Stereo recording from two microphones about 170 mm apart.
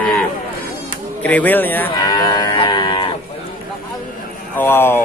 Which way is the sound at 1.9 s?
25° left (ahead or behind).